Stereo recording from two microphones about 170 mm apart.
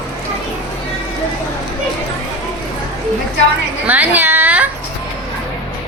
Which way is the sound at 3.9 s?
10° right (ahead or behind).